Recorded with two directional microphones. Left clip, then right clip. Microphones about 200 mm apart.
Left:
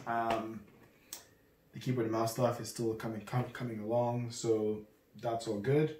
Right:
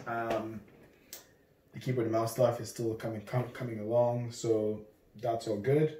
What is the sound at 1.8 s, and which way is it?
Speech, 10° left (ahead or behind).